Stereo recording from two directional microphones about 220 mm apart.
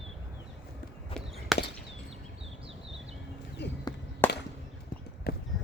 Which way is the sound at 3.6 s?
50° left (ahead or behind).